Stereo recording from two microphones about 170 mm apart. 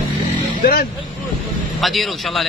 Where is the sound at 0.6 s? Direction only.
60° left (ahead or behind).